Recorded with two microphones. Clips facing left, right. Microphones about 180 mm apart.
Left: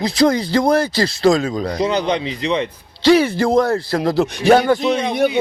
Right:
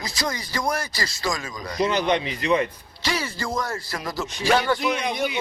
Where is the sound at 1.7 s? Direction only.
25° left (ahead or behind).